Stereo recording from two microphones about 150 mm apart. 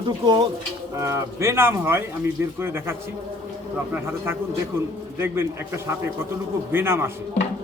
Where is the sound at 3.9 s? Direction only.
15° right (ahead or behind).